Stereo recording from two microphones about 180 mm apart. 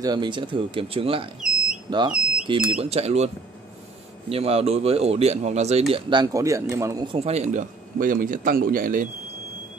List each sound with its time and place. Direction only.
0.0 s speech: 25° right (ahead or behind)
4.3 s speech: 35° right (ahead or behind)
7.2 s a man's voice: 35° right (ahead or behind)